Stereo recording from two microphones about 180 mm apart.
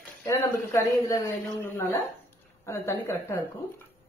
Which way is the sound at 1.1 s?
15° left (ahead or behind).